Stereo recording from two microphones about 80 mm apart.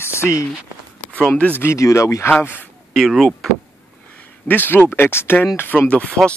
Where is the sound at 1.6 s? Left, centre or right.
Left.